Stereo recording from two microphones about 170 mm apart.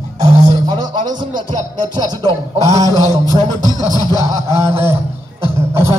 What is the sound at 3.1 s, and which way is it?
Music, 20° right (ahead or behind).